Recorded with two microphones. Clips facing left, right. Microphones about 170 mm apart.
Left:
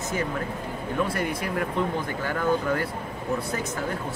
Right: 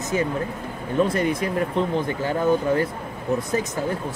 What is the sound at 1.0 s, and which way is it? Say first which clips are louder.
Speech: right 7 dB; 20° right (ahead or behind).